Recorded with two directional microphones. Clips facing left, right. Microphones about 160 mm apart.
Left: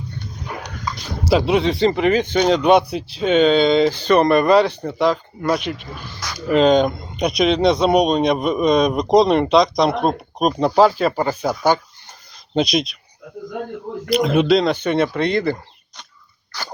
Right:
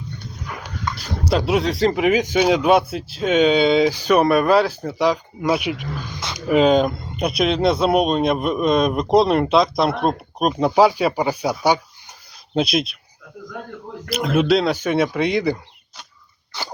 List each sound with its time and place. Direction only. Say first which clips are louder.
1.2 s speech: left 3 dB; 5° left (ahead or behind)
6.1 s speech: right 1 dB; 20° right (ahead or behind)
6.5 s speech: left 1 dB; 5° right (ahead or behind)
14.0 s speech: left 3 dB; centre (ahead or behind)
16.5 s dog: right 1 dB; 20° right (ahead or behind)